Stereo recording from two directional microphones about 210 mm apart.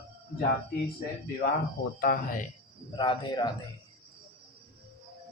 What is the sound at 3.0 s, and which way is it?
Speech, 20° left (ahead or behind).